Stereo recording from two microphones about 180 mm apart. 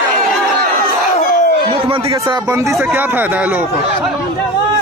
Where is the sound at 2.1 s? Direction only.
20° right (ahead or behind).